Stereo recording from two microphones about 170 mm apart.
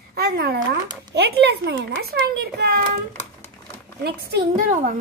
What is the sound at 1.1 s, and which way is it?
A child's voice, 75° right (ahead or behind).